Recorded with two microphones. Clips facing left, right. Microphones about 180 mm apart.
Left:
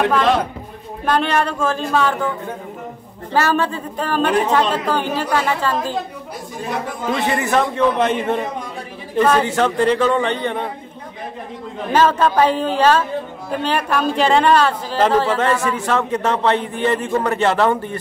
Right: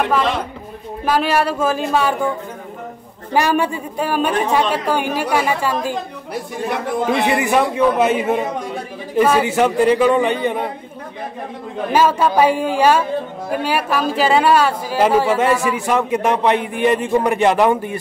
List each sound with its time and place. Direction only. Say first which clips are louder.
1.0 s a woman's voice: right 1 dB; 5° right (ahead or behind)
3.3 s a woman's voice: right 1 dB; 15° right (ahead or behind)
7.1 s a woman's voice: right 1 dB; 15° right (ahead or behind)
11.9 s a woman's voice: even; 10° right (ahead or behind)